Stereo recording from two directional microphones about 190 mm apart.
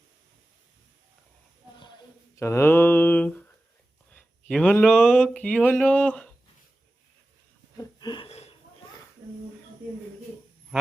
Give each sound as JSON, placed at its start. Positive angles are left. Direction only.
{"t": 2.3, "sound": "speech", "side_deg": 15}
{"t": 7.8, "sound": "wheeze", "side_deg": 20}